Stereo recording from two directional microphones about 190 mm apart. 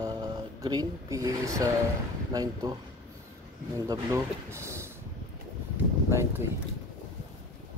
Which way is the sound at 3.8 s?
15° right (ahead or behind).